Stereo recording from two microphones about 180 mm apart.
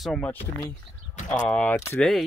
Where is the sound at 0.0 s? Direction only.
5° left (ahead or behind).